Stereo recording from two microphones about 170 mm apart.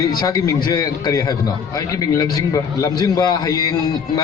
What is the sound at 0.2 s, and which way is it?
A man's voice, 20° left (ahead or behind).